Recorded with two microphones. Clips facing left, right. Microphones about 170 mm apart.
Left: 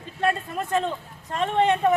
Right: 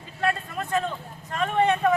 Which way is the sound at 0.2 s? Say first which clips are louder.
Left 2 dB; 20° left (ahead or behind).